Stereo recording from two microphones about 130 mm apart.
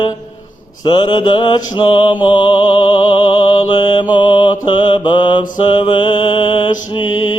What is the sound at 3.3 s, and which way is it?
Mantra, 35° left (ahead or behind).